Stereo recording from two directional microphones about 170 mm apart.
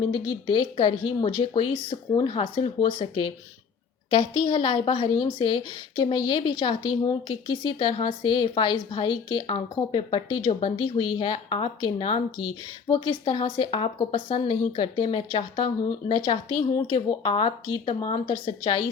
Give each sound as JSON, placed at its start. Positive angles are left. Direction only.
{"t": 0.1, "sound": "a woman's voice", "side_deg": 25}